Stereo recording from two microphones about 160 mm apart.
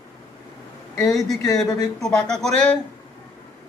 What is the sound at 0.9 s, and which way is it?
Speech, centre (ahead or behind).